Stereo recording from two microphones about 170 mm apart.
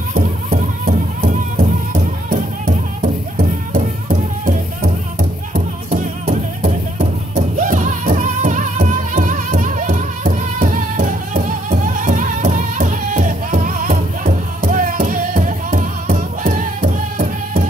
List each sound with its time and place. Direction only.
0.5 s music: 55° right (ahead or behind)